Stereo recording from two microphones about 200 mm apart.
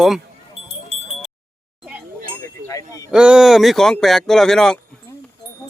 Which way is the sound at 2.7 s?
15° left (ahead or behind).